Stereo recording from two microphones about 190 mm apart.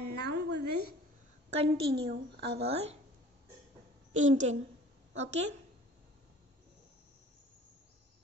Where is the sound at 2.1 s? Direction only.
60° right (ahead or behind).